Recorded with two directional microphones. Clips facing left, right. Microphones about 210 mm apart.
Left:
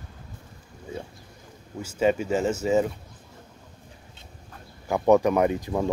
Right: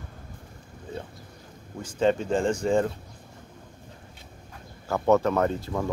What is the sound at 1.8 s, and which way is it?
Speech, 10° left (ahead or behind).